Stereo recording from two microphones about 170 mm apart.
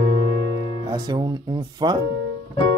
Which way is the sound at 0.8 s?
25° right (ahead or behind).